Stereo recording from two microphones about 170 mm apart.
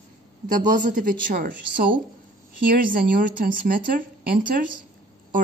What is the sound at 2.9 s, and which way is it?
A woman's voice, 55° right (ahead or behind).